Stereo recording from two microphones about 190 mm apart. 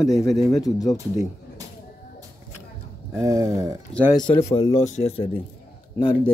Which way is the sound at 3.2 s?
15° right (ahead or behind).